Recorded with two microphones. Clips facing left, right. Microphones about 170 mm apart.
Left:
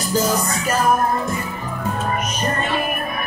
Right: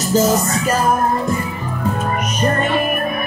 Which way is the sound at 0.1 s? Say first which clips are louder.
Right 5 dB; 25° right (ahead or behind).